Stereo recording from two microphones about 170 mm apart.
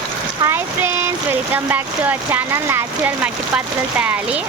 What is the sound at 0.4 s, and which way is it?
Speech, 15° right (ahead or behind).